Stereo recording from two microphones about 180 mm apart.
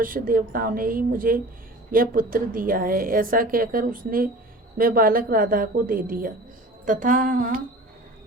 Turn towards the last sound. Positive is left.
turn(degrees=-45)  # may be behind; listen again after turning